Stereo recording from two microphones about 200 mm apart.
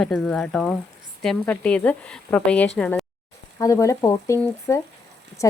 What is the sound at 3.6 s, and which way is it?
Speech, 15° left (ahead or behind).